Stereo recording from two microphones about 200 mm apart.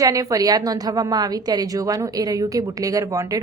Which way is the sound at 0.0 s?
15° right (ahead or behind).